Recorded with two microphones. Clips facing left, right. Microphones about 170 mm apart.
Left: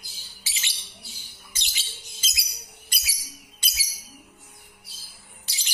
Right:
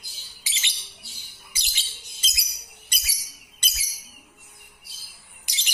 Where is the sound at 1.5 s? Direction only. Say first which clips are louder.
Left 1 dB; centre (ahead or behind).